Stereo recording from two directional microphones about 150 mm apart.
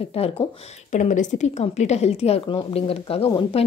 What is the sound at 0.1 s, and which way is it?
Speech, 40° left (ahead or behind).